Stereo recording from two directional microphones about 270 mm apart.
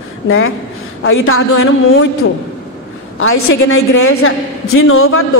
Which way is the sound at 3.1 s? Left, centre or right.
Left.